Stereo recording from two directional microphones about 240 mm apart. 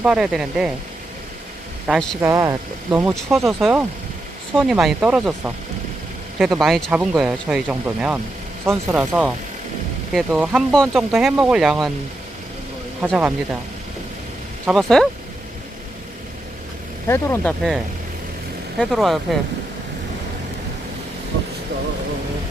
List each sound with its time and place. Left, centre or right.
0.0 s speech: centre
2.2 s speech: centre
6.6 s speech: centre
13.0 s speech: centre
14.7 s speech: centre
17.1 s speech: centre
18.8 s speech: centre
21.3 s vehicle: right